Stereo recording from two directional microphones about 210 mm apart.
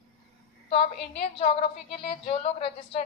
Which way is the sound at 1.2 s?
30° left (ahead or behind).